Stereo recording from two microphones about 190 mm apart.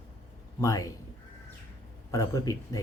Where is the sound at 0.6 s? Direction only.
15° left (ahead or behind).